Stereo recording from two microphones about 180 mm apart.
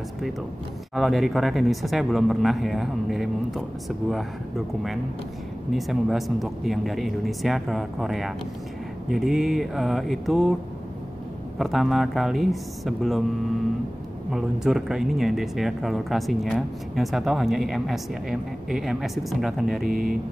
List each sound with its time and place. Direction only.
0.9 s speech: centre (ahead or behind)
11.5 s speech: centre (ahead or behind)
14.3 s speech: 5° right (ahead or behind)
19.9 s speech: 55° right (ahead or behind)